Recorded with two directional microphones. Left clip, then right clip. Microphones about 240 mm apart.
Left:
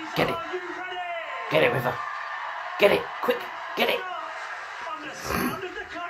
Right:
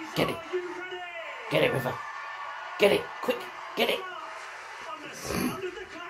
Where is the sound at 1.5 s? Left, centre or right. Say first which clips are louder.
Left 4 dB; centre.